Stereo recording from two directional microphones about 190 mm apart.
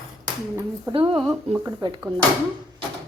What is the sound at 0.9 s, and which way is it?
Speech, 30° right (ahead or behind).